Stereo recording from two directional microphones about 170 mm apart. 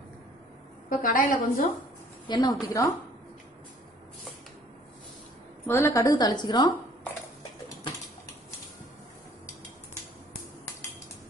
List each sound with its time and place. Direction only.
0.8 s a woman's voice: 50° left (ahead or behind)
2.2 s a woman's voice: 25° left (ahead or behind)
5.7 s a woman's voice: 15° left (ahead or behind)